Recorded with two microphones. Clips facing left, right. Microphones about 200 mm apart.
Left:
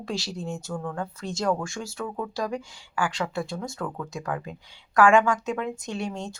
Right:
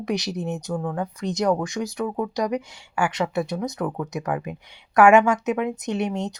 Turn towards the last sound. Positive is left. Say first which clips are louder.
# right 6 dB
turn(degrees=-20)  # may be behind; listen again after turning